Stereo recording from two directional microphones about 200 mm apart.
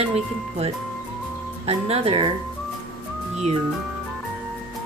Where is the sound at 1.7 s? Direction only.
30° right (ahead or behind).